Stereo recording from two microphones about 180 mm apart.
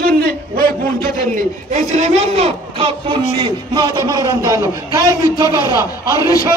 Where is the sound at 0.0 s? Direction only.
55° right (ahead or behind).